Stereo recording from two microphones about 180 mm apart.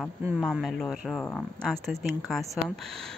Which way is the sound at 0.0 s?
5° left (ahead or behind).